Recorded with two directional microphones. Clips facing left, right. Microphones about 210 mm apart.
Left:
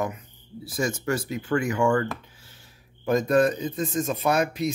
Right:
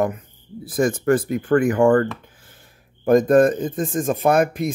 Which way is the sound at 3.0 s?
50° right (ahead or behind).